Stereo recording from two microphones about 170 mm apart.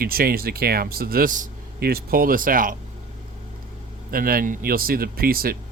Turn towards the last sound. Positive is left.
turn(degrees=-60)  # may be behind; listen again after turning